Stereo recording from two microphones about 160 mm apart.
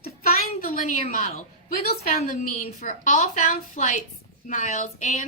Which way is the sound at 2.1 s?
45° left (ahead or behind).